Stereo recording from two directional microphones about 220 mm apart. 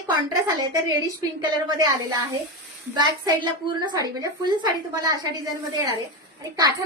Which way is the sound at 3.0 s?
20° right (ahead or behind).